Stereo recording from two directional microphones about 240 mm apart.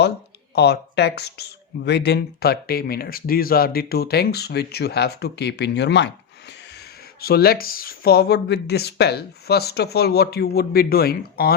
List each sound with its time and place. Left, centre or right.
0.5 s speech: left